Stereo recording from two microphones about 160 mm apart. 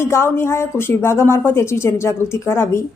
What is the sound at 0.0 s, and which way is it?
A woman's voice, 15° left (ahead or behind).